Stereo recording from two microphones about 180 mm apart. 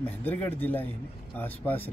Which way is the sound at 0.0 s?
10° left (ahead or behind).